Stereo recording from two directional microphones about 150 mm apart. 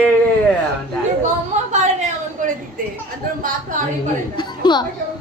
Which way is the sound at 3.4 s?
60° right (ahead or behind).